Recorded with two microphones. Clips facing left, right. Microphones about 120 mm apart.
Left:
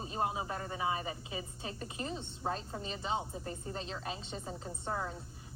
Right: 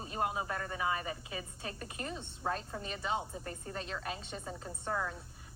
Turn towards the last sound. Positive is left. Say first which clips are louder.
# right 1 dB
turn(degrees=30)  # may be behind; listen again after turning